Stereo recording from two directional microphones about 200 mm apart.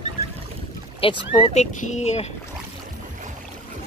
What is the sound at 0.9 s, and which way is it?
Speech, 25° left (ahead or behind).